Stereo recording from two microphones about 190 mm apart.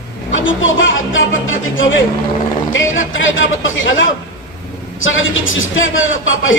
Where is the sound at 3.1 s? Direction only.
90° left.